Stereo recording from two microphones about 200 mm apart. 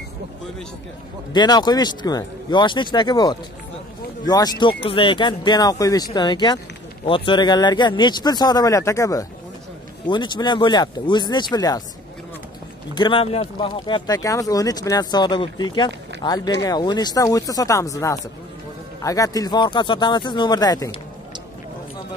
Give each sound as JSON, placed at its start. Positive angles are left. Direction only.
{"t": 1.3, "sound": "speech", "side_deg": 20}
{"t": 12.9, "sound": "speech", "side_deg": 25}